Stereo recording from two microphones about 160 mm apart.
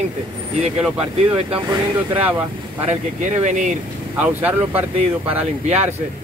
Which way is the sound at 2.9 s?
50° right (ahead or behind).